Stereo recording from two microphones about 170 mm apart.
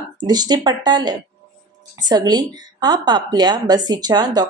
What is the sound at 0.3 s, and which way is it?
Speech, 25° right (ahead or behind).